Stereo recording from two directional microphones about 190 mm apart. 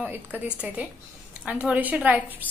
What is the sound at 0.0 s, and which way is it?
A woman's voice, 10° right (ahead or behind).